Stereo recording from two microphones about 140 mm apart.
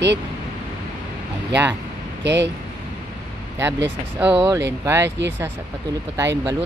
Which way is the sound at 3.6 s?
20° right (ahead or behind).